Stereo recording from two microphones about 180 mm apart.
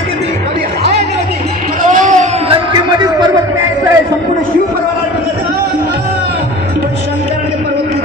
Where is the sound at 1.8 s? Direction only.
45° right (ahead or behind).